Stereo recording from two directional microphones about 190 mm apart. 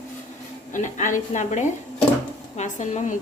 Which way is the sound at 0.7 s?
40° left (ahead or behind).